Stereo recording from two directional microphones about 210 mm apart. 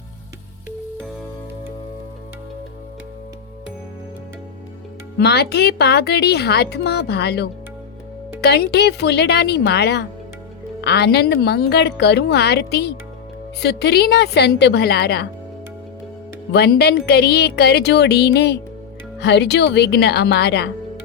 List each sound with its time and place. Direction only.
5.1 s a woman's voice: 50° left (ahead or behind)
16.5 s a woman's voice: 50° left (ahead or behind)